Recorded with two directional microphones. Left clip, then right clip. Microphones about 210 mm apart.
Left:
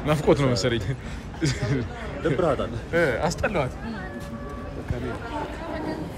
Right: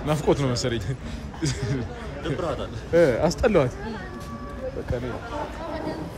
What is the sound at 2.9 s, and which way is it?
Speech, 25° right (ahead or behind).